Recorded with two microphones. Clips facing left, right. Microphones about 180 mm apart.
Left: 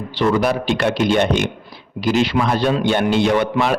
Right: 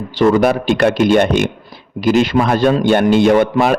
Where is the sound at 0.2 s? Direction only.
50° right (ahead or behind).